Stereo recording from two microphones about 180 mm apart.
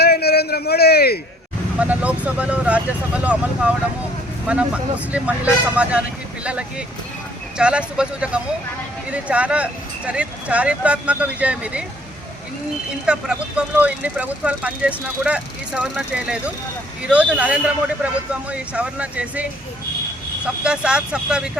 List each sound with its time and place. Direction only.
0.0 s a sound: 60° left (ahead or behind)
1.8 s speech: 5° right (ahead or behind)
13.1 s speech: 5° right (ahead or behind)